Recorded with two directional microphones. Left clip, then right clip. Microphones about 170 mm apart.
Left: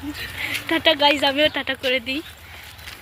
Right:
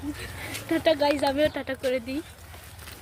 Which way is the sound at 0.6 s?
10° left (ahead or behind).